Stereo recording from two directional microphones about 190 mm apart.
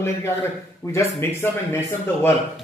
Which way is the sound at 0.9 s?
15° left (ahead or behind).